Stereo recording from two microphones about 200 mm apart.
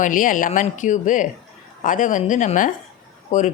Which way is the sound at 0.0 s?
40° left (ahead or behind).